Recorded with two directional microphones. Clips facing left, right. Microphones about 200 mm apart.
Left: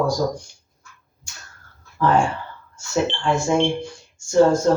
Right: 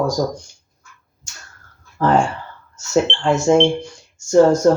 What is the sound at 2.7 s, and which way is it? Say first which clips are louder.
Speech: right 4 dB; 45° right (ahead or behind).